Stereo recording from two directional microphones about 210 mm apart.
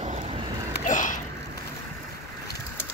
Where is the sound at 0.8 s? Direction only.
35° left (ahead or behind).